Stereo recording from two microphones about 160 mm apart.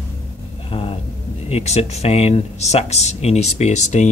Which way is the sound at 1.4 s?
40° left (ahead or behind).